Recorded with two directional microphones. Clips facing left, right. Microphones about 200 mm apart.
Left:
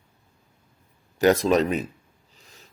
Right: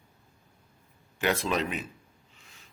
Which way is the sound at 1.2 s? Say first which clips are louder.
Left 9 dB; 40° left (ahead or behind).